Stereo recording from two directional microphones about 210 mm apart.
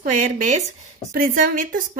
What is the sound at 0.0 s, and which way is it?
A woman's voice, 35° right (ahead or behind).